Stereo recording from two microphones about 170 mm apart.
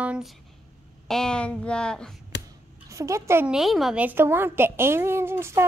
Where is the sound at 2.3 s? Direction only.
90° left.